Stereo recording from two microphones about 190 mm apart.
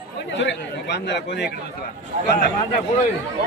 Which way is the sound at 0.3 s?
75° left (ahead or behind).